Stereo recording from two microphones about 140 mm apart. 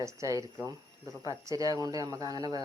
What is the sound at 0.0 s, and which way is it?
Speech, 20° right (ahead or behind).